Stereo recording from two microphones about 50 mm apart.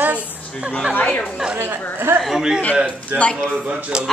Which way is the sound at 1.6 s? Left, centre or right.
Right.